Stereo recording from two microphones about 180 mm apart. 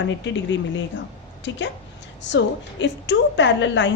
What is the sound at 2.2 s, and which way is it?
A woman's voice, 80° left.